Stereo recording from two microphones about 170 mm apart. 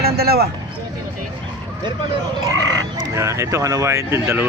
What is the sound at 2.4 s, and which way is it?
Speech, 20° right (ahead or behind).